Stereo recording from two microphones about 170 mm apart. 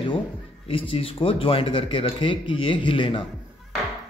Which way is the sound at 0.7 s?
30° left (ahead or behind).